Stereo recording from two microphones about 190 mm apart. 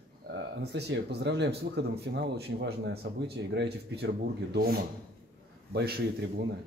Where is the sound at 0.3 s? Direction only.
60° right (ahead or behind).